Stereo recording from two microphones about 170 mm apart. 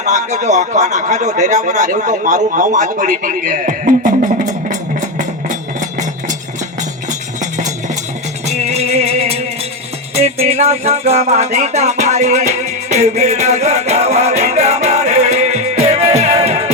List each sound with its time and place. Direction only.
0.0 s speech: 45° right (ahead or behind)
8.4 s music: 40° right (ahead or behind)
10.4 s music: 35° right (ahead or behind)